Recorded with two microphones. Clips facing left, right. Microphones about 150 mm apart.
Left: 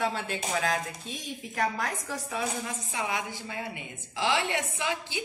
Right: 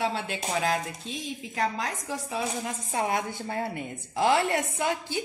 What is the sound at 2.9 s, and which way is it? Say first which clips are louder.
A woman's voice: right 5 dB; 45° right (ahead or behind).